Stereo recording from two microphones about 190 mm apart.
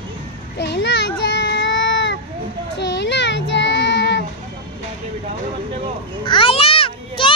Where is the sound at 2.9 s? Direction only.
70° left (ahead or behind).